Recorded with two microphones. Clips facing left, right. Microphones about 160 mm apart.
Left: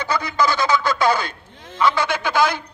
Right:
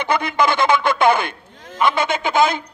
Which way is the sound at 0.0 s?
25° right (ahead or behind).